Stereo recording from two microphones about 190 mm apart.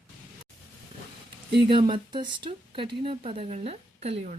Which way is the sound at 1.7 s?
25° right (ahead or behind).